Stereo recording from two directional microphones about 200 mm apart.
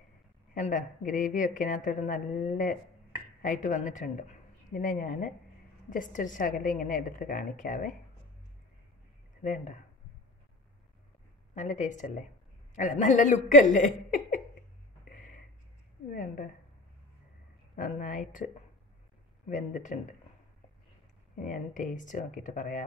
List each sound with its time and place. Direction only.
0.6 s speech: 40° left (ahead or behind)
9.4 s speech: 40° left (ahead or behind)
11.5 s speech: 35° left (ahead or behind)
15.0 s a sound: 40° left (ahead or behind)
16.1 s a woman's voice: 45° left (ahead or behind)
17.7 s speech: 45° left (ahead or behind)
19.5 s speech: 40° left (ahead or behind)
21.4 s speech: 40° left (ahead or behind)